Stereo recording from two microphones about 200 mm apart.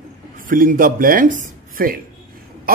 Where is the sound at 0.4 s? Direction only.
45° right (ahead or behind).